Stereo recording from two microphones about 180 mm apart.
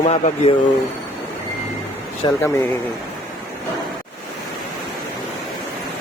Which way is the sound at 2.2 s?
25° left (ahead or behind).